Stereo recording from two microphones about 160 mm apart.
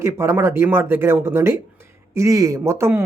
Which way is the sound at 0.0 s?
15° right (ahead or behind).